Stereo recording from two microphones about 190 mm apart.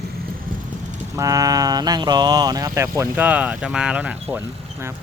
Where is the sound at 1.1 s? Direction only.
20° right (ahead or behind).